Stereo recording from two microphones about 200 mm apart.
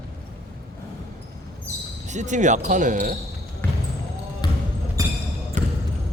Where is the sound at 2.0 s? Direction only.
35° right (ahead or behind).